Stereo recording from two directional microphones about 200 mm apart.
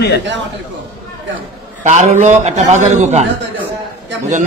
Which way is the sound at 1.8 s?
35° right (ahead or behind).